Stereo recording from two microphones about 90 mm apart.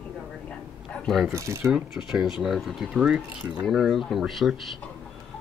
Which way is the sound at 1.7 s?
5° right (ahead or behind).